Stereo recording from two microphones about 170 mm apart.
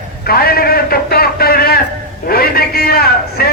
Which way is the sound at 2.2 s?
60° left (ahead or behind).